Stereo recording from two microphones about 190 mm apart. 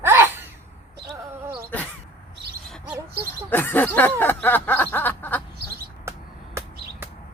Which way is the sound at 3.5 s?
10° left (ahead or behind).